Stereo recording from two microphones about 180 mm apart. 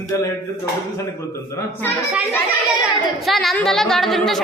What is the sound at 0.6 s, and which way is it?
Speech, 15° left (ahead or behind).